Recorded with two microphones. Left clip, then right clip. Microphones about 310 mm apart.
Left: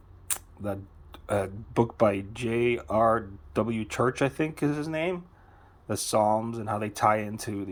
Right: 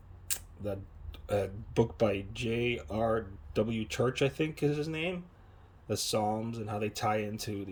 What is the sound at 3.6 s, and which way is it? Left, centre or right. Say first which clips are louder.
Speech: left 3 dB; left.